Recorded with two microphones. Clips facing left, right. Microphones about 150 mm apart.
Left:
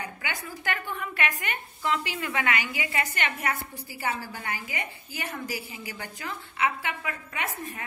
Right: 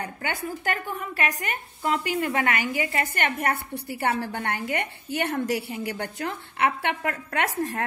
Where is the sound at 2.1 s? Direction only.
50° right (ahead or behind).